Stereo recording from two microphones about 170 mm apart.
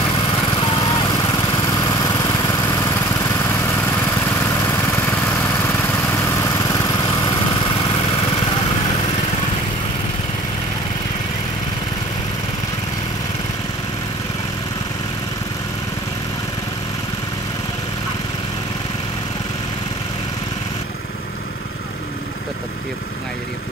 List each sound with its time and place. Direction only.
0.6 s lawn mower: 25° left (ahead or behind)